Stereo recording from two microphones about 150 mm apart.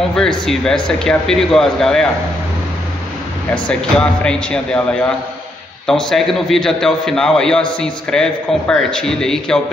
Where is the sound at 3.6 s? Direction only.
5° left (ahead or behind).